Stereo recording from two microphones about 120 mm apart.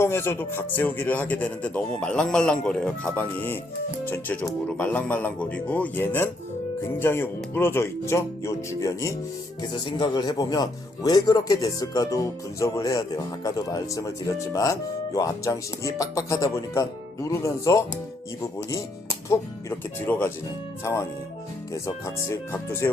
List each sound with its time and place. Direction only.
0.0 s a man's voice: 20° left (ahead or behind)
9.7 s speech: 40° left (ahead or behind)
18.7 s music: 25° left (ahead or behind)
20.0 s speech: 20° left (ahead or behind)